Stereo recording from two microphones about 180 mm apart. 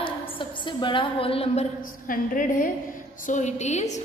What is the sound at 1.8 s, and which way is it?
A woman's voice, 50° left (ahead or behind).